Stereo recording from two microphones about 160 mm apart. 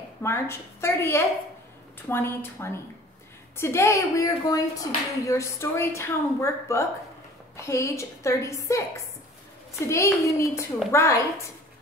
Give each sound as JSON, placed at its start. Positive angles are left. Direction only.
{"t": 0.2, "sound": "a woman's voice", "side_deg": 15}